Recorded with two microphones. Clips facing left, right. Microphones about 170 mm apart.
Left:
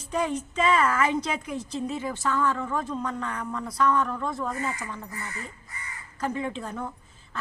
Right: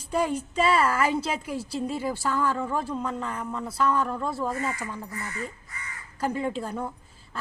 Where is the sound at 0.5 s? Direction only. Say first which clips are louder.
Even; 35° right (ahead or behind).